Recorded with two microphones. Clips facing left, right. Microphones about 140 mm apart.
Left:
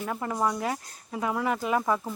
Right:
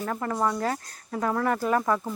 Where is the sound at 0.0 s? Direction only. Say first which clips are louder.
Right 1 dB; 10° left (ahead or behind).